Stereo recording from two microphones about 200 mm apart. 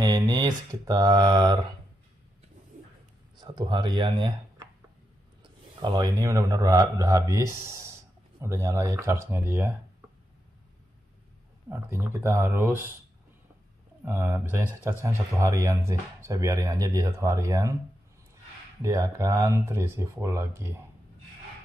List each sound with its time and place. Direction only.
0.0 s speech: 20° right (ahead or behind)
3.3 s speech: 20° right (ahead or behind)
11.7 s speech: 10° right (ahead or behind)
14.0 s speech: 10° right (ahead or behind)
18.8 s speech: 15° right (ahead or behind)